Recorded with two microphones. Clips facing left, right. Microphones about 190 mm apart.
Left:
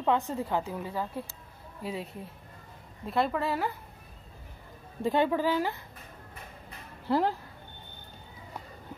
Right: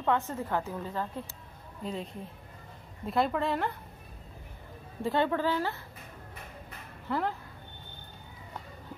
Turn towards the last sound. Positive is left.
turn(degrees=35)  # may be behind; listen again after turning